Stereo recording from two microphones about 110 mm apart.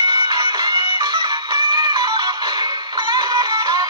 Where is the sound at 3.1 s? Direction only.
30° right (ahead or behind).